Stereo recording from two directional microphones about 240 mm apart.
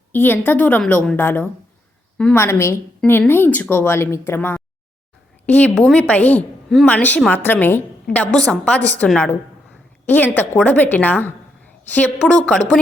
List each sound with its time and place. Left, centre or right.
0.1 s a woman's voice: centre
10.3 s a woman's voice: centre